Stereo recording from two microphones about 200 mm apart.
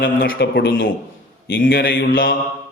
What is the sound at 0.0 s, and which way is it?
Speech, 60° left (ahead or behind).